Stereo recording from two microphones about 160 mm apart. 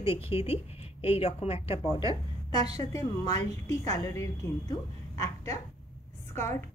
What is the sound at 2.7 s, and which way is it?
A woman's voice, 25° left (ahead or behind).